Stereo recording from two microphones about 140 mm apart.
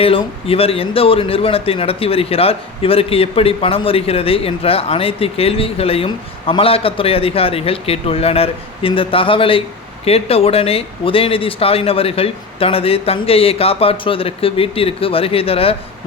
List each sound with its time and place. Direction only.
0.0 s a man's voice: 40° left (ahead or behind)